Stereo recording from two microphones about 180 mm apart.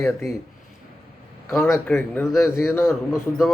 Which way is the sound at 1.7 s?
10° left (ahead or behind).